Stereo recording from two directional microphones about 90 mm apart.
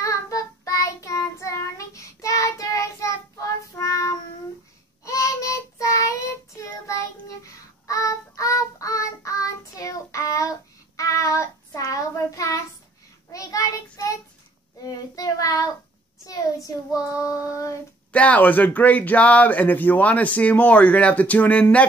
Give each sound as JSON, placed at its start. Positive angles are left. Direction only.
{"t": 0.0, "sound": "child singing", "side_deg": 35}
{"t": 18.1, "sound": "speech", "side_deg": 15}